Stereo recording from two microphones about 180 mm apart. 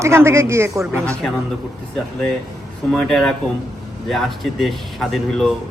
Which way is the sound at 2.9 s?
Centre (ahead or behind).